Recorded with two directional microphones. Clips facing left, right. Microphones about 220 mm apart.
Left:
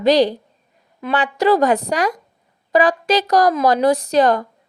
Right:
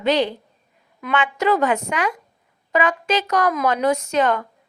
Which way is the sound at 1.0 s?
35° left (ahead or behind).